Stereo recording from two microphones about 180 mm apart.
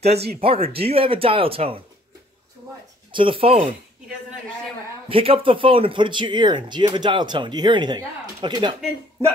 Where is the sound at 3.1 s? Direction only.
30° right (ahead or behind).